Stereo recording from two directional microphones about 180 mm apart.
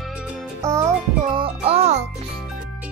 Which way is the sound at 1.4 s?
35° right (ahead or behind).